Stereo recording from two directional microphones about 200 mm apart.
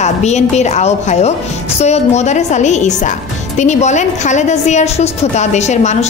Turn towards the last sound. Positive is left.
turn(degrees=35)  # may be behind; listen again after turning